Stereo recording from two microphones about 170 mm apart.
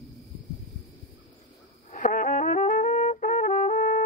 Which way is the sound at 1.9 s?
50° left (ahead or behind).